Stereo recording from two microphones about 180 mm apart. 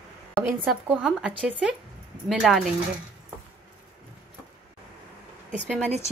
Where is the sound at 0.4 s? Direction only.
5° right (ahead or behind).